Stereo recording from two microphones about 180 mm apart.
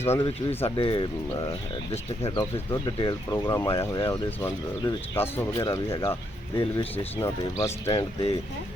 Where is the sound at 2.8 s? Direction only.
25° left (ahead or behind).